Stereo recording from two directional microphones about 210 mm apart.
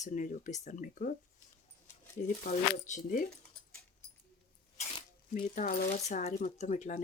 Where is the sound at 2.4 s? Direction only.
40° left (ahead or behind).